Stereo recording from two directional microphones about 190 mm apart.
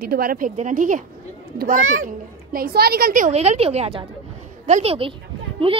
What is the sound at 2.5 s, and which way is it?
A woman's voice, 55° right (ahead or behind).